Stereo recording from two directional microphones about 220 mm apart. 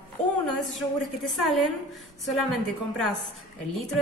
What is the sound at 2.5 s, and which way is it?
Speech, centre (ahead or behind).